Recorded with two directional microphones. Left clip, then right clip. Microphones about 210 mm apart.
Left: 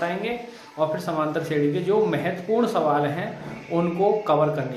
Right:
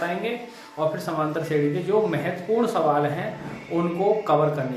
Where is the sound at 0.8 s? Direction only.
25° left (ahead or behind).